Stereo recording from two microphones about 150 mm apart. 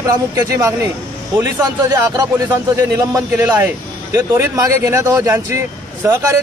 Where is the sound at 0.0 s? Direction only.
20° right (ahead or behind).